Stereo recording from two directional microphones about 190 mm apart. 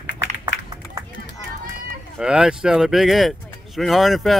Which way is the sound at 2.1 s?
5° right (ahead or behind).